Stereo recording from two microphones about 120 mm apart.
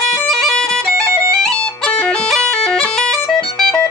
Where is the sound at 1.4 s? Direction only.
10° left (ahead or behind).